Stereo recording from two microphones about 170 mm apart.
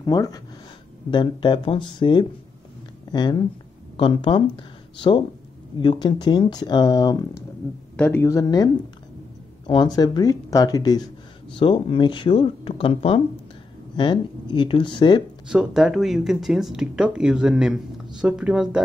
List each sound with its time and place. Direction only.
0.0 s speech: 20° left (ahead or behind)
5.8 s speech: 30° left (ahead or behind)
8.0 s speech: 10° left (ahead or behind)
9.7 s speech: 25° left (ahead or behind)
15.4 s speech: 5° right (ahead or behind)